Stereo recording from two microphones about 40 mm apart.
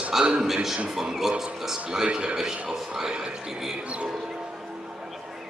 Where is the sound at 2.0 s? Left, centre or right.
Right.